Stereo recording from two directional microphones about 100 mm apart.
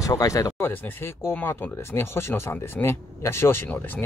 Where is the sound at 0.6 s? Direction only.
20° left (ahead or behind).